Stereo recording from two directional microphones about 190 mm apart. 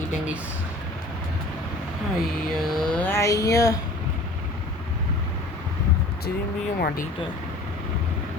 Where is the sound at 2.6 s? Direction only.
Centre (ahead or behind); by 3.7 s 15° left (ahead or behind).